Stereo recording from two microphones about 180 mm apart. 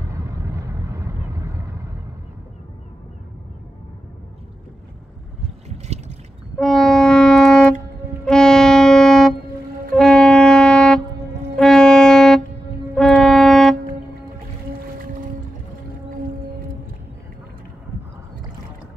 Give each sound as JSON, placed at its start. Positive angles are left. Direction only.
{"t": 0.1, "sound": "vehicle", "side_deg": -15}
{"t": 5.7, "sound": "trickle", "side_deg": -35}
{"t": 6.6, "sound": "music", "side_deg": 5}
{"t": 15.0, "sound": "boat", "side_deg": -50}